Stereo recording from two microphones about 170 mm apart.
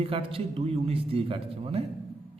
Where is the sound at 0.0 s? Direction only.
35° right (ahead or behind).